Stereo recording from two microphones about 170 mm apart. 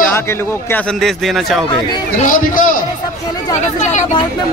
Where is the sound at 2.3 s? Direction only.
55° left (ahead or behind).